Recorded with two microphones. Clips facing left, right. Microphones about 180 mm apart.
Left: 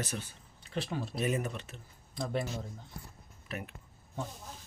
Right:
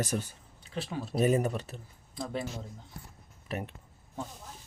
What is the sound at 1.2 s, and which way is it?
Speech, 40° right (ahead or behind).